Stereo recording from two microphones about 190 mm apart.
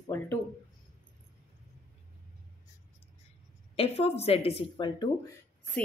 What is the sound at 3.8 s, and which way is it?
A woman's voice, 30° left (ahead or behind).